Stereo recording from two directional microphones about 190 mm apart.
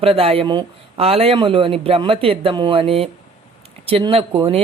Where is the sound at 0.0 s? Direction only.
30° right (ahead or behind).